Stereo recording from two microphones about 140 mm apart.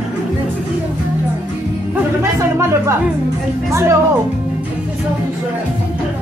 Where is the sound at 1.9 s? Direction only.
20° right (ahead or behind).